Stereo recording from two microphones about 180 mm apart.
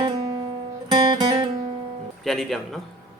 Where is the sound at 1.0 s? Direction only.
20° right (ahead or behind).